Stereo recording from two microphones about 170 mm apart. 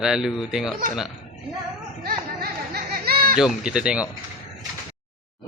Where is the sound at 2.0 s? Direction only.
60° right (ahead or behind).